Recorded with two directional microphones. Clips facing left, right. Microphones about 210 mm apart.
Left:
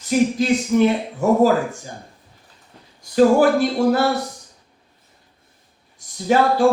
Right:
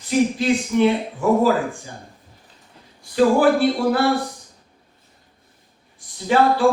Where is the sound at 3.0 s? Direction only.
40° left (ahead or behind).